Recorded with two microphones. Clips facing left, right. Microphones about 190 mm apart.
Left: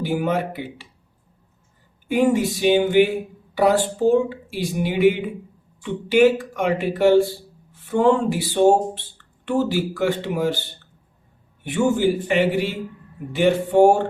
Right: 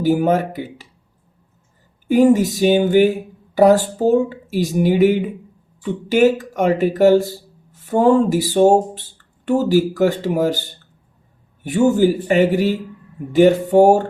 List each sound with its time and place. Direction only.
0.0 s speech: 40° right (ahead or behind)
2.0 s a man's voice: 40° right (ahead or behind)